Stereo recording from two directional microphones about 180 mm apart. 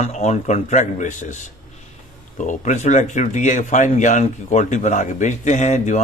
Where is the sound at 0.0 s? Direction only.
40° left (ahead or behind).